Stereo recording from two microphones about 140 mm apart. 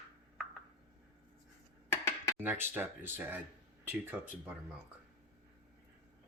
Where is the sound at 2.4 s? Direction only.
15° right (ahead or behind).